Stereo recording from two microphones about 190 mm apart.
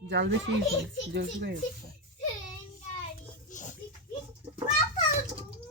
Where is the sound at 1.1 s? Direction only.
60° right (ahead or behind).